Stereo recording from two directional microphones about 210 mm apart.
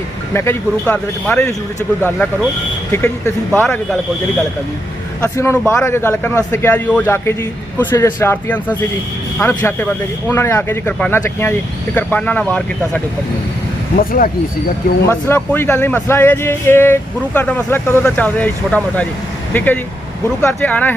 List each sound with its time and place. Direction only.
0.3 s speech: 10° left (ahead or behind)
5.2 s speech: 10° left (ahead or behind)
13.9 s speech: 45° left (ahead or behind)
15.0 s speech: 10° left (ahead or behind)